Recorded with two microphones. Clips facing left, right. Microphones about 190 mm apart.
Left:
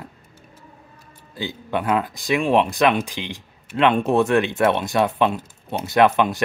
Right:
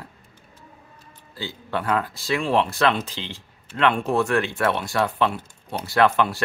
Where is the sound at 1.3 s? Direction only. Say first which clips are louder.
Left 3 dB; 15° left (ahead or behind).